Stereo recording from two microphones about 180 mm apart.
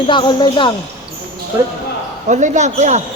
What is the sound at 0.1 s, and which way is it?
Speech, 25° left (ahead or behind).